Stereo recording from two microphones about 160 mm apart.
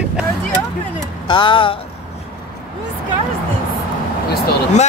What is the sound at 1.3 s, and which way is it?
Speech, 30° left (ahead or behind).